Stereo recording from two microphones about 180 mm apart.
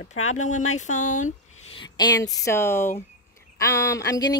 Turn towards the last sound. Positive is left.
turn(degrees=20)  # may be behind; listen again after turning